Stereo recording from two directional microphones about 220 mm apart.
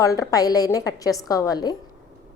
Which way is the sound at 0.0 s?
15° left (ahead or behind).